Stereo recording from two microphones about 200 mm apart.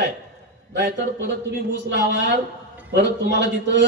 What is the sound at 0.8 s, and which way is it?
A man's voice, 60° right (ahead or behind).